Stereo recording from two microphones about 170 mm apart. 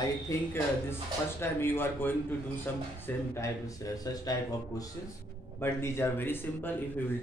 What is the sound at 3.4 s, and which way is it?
A man's voice, 20° left (ahead or behind).